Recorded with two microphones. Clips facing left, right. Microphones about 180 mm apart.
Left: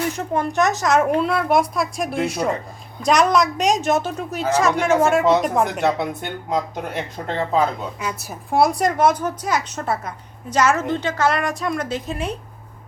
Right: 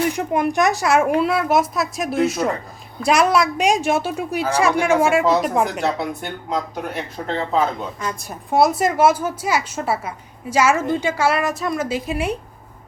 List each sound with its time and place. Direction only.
0.1 s a woman's voice: 15° right (ahead or behind)
6.5 s speech: 20° left (ahead or behind)
7.9 s a woman's voice: 5° left (ahead or behind); by 12.4 s 10° right (ahead or behind)